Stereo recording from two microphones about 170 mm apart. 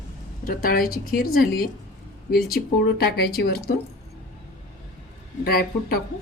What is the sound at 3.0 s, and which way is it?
Speech, 70° left (ahead or behind).